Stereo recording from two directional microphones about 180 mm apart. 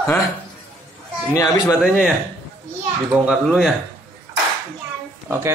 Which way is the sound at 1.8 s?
5° right (ahead or behind).